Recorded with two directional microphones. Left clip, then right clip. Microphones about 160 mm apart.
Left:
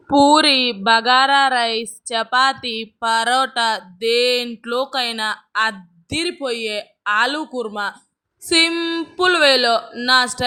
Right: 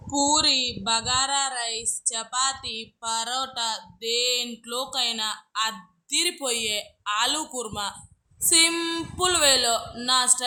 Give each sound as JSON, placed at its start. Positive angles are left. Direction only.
{"t": 0.1, "sound": "a woman's voice", "side_deg": 50}
{"t": 8.7, "sound": "a woman's voice", "side_deg": 25}